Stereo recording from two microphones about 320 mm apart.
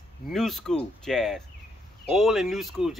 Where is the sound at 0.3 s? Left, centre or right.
Centre.